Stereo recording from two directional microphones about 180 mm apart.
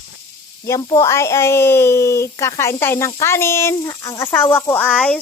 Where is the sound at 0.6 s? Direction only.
20° left (ahead or behind).